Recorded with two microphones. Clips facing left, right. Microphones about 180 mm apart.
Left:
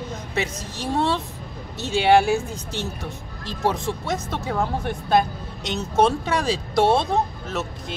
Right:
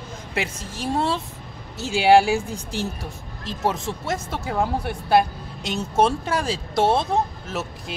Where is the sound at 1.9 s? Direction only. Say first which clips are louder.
Right 1 dB; 10° right (ahead or behind).